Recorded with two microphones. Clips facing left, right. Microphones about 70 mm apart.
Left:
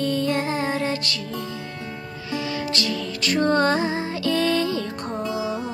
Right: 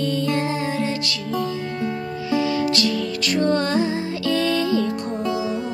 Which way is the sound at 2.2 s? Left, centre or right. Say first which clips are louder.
Right 7 dB; right.